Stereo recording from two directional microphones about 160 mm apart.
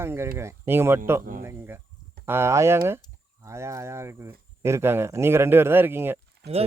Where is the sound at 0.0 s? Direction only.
15° right (ahead or behind).